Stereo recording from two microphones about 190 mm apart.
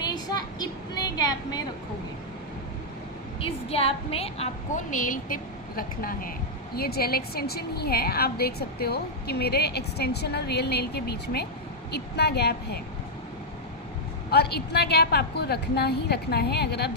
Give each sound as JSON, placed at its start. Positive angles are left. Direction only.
{"t": 0.1, "sound": "child singing", "side_deg": 20}
{"t": 1.1, "sound": "a sound", "side_deg": 20}
{"t": 3.4, "sound": "a woman's voice", "side_deg": 30}
{"t": 14.3, "sound": "a woman's voice", "side_deg": 60}